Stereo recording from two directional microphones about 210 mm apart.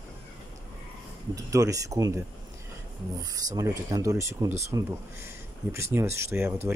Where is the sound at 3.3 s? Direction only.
15° right (ahead or behind).